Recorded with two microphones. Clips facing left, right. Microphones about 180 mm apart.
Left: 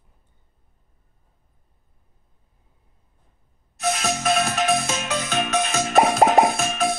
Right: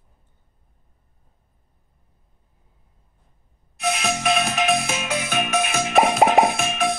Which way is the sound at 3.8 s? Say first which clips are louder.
Even; 15° right (ahead or behind).